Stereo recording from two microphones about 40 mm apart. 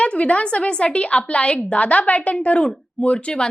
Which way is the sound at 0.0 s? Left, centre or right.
Left.